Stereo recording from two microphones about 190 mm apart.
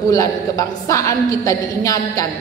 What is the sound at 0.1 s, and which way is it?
A woman's voice, 15° left (ahead or behind).